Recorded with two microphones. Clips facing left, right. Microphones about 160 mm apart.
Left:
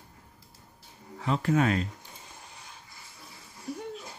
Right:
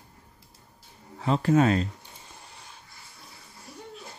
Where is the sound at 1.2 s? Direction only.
35° right (ahead or behind).